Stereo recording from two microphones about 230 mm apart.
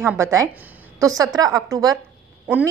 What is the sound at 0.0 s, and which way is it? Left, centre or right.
A woman's voice, centre.